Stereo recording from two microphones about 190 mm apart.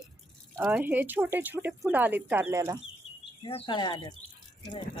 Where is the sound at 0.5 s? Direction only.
10° right (ahead or behind).